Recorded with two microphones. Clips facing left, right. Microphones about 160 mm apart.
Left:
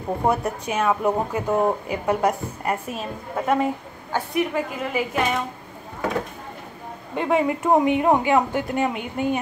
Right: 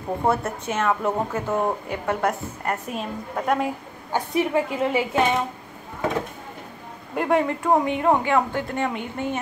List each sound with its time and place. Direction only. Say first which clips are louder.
0.2 s speech: left 1 dB; 15° left (ahead or behind)
4.4 s a woman's voice: right 3 dB; 25° right (ahead or behind)
7.2 s a woman's voice: even; centre (ahead or behind)
7.4 s speech: left 2 dB; 15° left (ahead or behind)